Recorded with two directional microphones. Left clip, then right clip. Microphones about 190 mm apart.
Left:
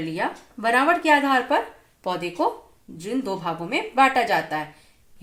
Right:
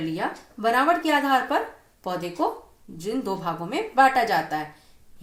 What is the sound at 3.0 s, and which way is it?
Speech, 30° left (ahead or behind).